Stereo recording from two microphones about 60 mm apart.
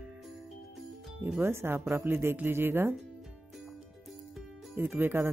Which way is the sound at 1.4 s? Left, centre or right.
Right.